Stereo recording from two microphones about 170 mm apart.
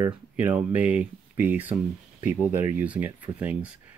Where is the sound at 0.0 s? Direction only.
10° right (ahead or behind).